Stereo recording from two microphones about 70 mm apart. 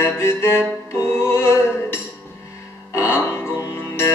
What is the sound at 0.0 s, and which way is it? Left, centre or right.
Music, left.